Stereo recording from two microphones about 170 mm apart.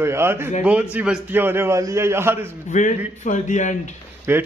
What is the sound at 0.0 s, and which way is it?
A man's voice, 15° right (ahead or behind).